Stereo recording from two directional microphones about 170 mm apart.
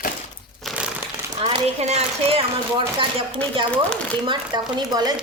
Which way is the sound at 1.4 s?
35° right (ahead or behind).